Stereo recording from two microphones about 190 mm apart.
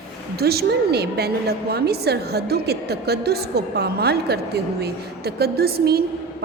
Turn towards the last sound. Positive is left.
turn(degrees=-55)  # may be behind; listen again after turning